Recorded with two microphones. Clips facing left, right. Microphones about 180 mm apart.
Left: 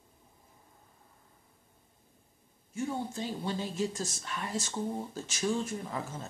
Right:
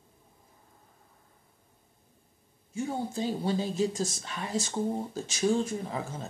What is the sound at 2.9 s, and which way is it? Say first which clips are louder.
Speech: right 6 dB; 35° right (ahead or behind).